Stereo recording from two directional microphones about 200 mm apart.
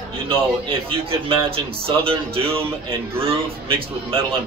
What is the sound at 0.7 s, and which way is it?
A man's voice, 25° right (ahead or behind).